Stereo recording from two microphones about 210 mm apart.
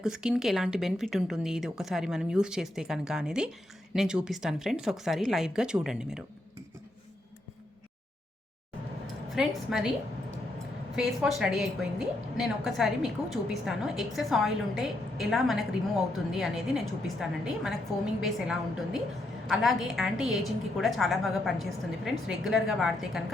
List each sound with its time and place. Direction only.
0.0 s a woman's voice: 5° right (ahead or behind)
9.3 s a woman's voice: centre (ahead or behind)
10.9 s a woman's voice: centre (ahead or behind)